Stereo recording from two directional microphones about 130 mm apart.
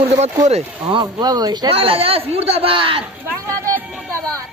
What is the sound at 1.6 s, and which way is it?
Speech, 45° right (ahead or behind).